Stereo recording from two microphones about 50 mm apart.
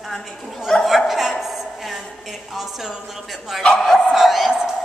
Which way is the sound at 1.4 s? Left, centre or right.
Centre.